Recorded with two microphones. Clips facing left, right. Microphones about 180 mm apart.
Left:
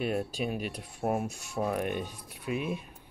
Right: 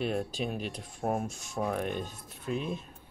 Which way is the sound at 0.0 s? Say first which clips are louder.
Left 1 dB; 5° left (ahead or behind).